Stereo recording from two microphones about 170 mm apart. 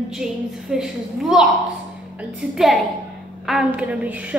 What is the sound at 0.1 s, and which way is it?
A woman's voice, 5° right (ahead or behind).